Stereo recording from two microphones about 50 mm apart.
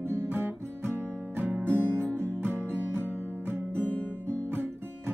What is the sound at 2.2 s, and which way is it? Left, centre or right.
Music, right.